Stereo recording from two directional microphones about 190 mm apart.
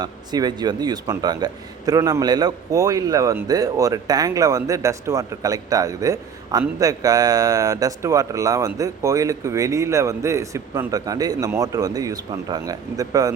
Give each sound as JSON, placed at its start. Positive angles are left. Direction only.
{"t": 0.0, "sound": "a man's voice", "side_deg": -20}